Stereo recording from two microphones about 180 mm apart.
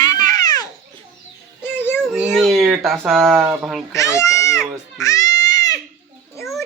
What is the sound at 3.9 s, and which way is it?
Speech, 15° left (ahead or behind).